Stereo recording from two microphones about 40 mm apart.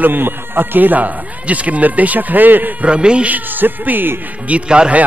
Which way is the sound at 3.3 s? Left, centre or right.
Right.